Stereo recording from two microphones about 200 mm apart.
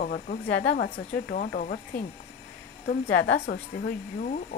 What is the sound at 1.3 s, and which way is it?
Speech, 50° left (ahead or behind).